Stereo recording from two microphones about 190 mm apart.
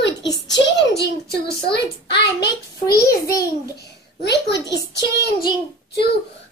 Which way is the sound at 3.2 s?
20° left (ahead or behind).